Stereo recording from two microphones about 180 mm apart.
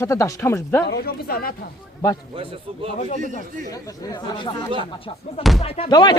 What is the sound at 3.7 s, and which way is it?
Speech, 20° left (ahead or behind).